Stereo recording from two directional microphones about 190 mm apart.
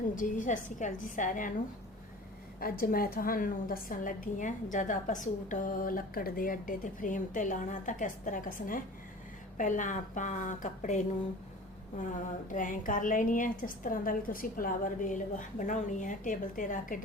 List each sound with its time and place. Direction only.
0.2 s a woman's voice: 40° left (ahead or behind)
2.6 s a woman's voice: 50° left (ahead or behind)
12.5 s a woman's voice: 45° left (ahead or behind)